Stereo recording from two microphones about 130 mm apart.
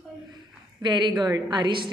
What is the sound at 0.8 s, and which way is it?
A woman's voice, 35° right (ahead or behind).